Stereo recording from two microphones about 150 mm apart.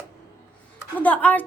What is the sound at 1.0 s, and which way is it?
Speech, 10° left (ahead or behind).